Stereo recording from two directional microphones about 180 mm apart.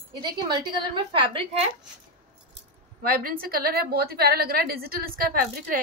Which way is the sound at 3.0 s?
55° right (ahead or behind).